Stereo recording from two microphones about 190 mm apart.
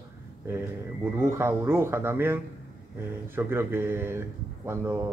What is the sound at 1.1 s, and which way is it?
Speech, 15° right (ahead or behind).